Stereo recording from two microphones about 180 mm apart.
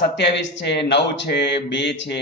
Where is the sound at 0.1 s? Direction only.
75° left (ahead or behind).